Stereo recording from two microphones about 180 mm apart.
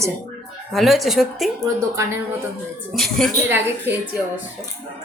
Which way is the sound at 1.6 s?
15° right (ahead or behind).